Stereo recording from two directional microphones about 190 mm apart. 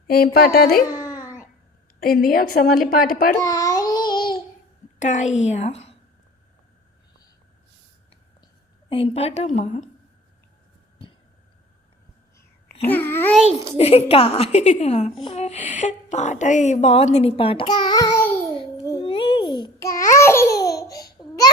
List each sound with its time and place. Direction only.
0.3 s a woman's voice: 55° left (ahead or behind)
0.9 s babbling: 20° left (ahead or behind)
2.0 s a woman's voice: 50° left (ahead or behind)
3.4 s babbling: 15° left (ahead or behind)
4.9 s a woman's voice: 40° left (ahead or behind)
8.9 s a woman's voice: 30° left (ahead or behind)
12.8 s a child's voice: 10° left (ahead or behind)
13.7 s a woman's voice: 30° left (ahead or behind); by 18.3 s 15° left (ahead or behind)
18.9 s babbling: 30° left (ahead or behind)